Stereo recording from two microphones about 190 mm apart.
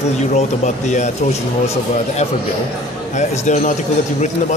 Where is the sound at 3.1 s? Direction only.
40° left (ahead or behind).